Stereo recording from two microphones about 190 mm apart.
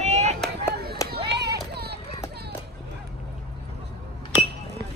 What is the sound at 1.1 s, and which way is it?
Run, 60° right (ahead or behind).